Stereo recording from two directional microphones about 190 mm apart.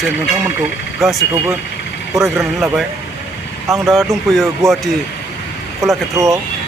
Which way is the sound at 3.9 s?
Centre (ahead or behind).